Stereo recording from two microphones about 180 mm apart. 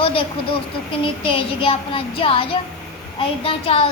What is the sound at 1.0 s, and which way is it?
Child singing, 30° left (ahead or behind).